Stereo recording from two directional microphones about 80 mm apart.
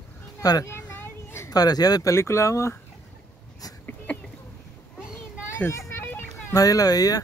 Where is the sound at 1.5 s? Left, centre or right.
Left.